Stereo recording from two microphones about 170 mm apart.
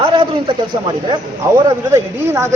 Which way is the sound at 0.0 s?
30° right (ahead or behind).